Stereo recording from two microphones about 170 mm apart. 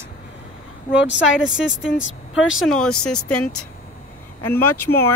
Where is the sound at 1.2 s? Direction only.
5° right (ahead or behind).